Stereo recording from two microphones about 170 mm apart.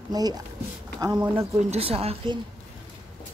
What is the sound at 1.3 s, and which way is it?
A woman's voice, 35° right (ahead or behind).